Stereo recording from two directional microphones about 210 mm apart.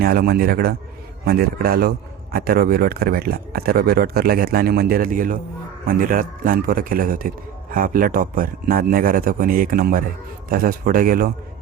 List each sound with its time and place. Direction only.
0.0 s a man's voice: 45° right (ahead or behind)